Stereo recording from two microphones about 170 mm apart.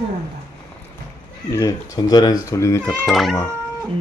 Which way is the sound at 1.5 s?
20° left (ahead or behind).